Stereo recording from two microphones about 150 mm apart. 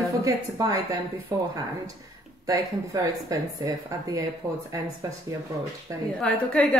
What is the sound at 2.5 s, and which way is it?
Speech, 25° right (ahead or behind).